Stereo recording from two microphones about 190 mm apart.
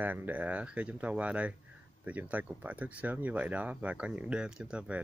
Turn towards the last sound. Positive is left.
turn(degrees=-5)  # may be behind; listen again after turning